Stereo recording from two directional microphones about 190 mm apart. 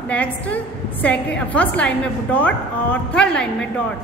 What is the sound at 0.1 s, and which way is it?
A woman's voice, 5° left (ahead or behind).